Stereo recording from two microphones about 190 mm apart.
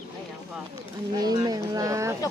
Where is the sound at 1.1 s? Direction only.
20° right (ahead or behind).